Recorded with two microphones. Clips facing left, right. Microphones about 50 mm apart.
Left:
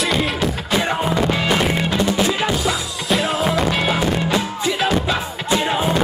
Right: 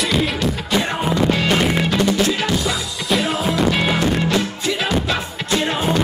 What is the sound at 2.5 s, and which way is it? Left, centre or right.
Music, centre.